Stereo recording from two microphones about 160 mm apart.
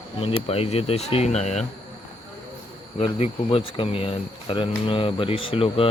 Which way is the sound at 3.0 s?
40° left (ahead or behind).